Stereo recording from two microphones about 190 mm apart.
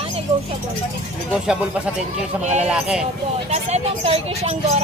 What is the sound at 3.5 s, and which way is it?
Speech, 35° right (ahead or behind).